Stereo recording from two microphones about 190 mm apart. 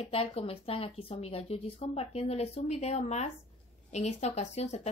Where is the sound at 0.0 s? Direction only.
30° left (ahead or behind).